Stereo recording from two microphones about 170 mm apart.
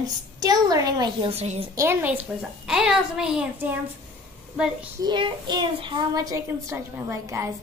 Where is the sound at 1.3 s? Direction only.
40° right (ahead or behind).